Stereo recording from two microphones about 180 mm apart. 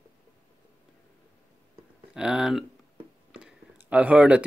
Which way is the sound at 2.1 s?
5° right (ahead or behind).